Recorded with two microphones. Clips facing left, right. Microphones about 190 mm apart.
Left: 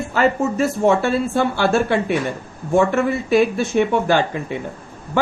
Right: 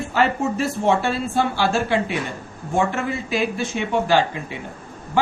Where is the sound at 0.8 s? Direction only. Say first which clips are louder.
Left 3 dB; 50° left (ahead or behind).